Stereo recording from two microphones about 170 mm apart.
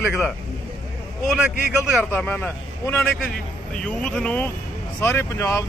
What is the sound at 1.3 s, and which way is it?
Speech, 5° right (ahead or behind).